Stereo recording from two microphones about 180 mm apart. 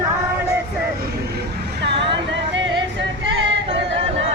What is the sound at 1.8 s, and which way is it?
Music, 75° right (ahead or behind).